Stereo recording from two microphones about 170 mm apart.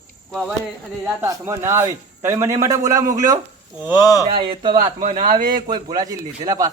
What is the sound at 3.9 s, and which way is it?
Speech, 20° left (ahead or behind).